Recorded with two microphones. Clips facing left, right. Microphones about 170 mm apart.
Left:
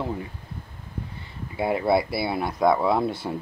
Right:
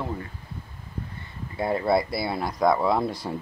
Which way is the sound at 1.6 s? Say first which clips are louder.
Left 1 dB; 10° left (ahead or behind).